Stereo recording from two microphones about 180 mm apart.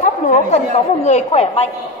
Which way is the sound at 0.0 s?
40° left (ahead or behind).